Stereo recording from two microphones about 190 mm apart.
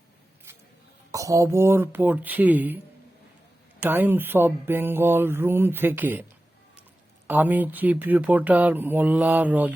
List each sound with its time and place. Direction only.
1.1 s speech: 15° right (ahead or behind)
3.8 s speech: 10° right (ahead or behind)
7.3 s speech: 10° right (ahead or behind)